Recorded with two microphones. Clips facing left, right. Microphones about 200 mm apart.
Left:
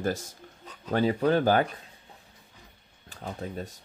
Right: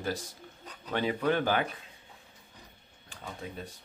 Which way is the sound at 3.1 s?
40° left (ahead or behind).